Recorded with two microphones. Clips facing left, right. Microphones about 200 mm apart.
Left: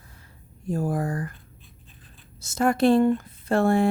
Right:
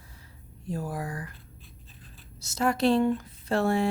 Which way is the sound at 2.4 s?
50° left (ahead or behind).